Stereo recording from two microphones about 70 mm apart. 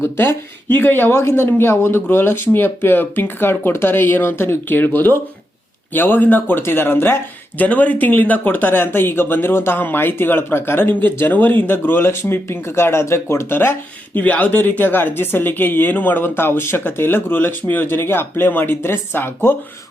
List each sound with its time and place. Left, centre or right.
0.0 s speech: left
7.6 s speech: left